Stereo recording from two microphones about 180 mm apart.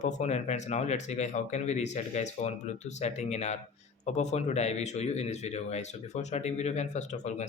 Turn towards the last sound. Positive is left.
turn(degrees=40)  # may be behind; listen again after turning